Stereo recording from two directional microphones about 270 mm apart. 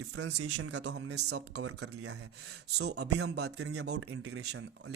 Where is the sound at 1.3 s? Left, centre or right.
Right.